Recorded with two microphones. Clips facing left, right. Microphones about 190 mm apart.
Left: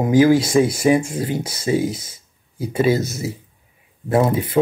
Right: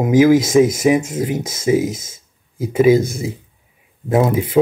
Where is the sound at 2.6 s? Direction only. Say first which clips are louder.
Right 5 dB; 10° right (ahead or behind).